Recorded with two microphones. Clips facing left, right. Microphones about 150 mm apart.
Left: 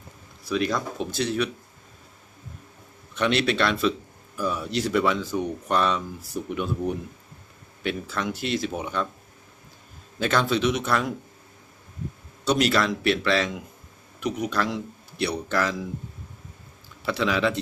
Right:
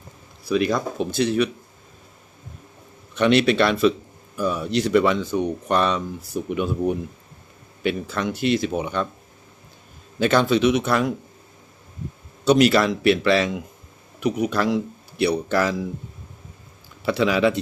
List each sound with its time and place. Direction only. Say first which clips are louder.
0.4 s speech: right 4 dB; 5° right (ahead or behind)
3.2 s speech: right 6 dB; centre (ahead or behind)
10.2 s speech: right 5 dB; centre (ahead or behind)
12.5 s speech: right 6 dB; 5° right (ahead or behind)
17.1 s speech: right 5 dB; 5° right (ahead or behind)